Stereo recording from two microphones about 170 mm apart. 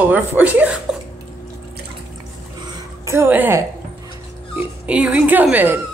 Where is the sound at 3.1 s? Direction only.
15° right (ahead or behind).